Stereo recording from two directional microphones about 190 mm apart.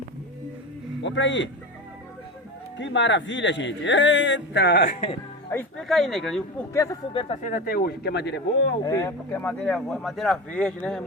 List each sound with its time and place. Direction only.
1.0 s speech: 70° left (ahead or behind)
2.7 s speech: 70° left (ahead or behind); by 4.9 s 55° left (ahead or behind)
5.5 s speech: 5° left (ahead or behind)
7.1 s speech: 30° left (ahead or behind)
7.4 s speech: 45° left (ahead or behind); by 8.7 s 65° left (ahead or behind)
8.8 s speech: 20° left (ahead or behind)